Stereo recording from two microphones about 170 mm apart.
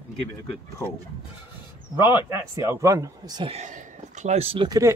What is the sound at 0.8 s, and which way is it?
Speech, 10° left (ahead or behind).